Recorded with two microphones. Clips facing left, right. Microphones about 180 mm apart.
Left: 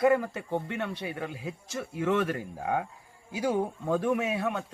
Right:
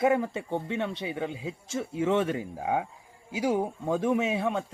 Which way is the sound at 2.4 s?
10° right (ahead or behind).